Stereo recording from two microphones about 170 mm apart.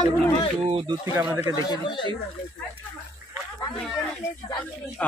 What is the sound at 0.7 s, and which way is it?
Speech, 20° right (ahead or behind).